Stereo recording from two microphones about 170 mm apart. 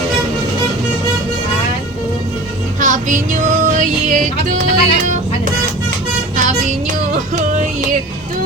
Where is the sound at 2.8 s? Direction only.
50° right (ahead or behind).